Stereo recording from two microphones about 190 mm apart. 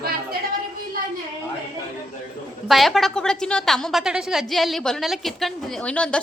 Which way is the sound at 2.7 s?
Centre (ahead or behind).